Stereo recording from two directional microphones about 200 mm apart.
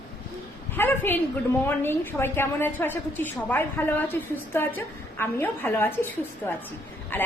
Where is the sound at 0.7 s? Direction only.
10° left (ahead or behind).